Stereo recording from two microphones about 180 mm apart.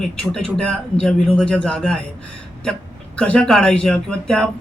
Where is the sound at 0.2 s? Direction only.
5° left (ahead or behind).